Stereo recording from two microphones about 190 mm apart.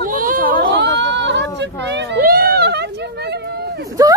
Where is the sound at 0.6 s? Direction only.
60° right (ahead or behind).